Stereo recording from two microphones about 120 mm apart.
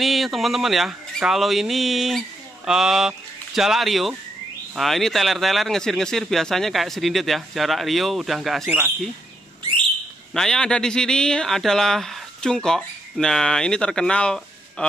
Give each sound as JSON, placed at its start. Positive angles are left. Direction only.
{"t": 0.0, "sound": "speech", "side_deg": 0}
{"t": 8.6, "sound": "speech", "side_deg": -15}
{"t": 10.3, "sound": "speech", "side_deg": 5}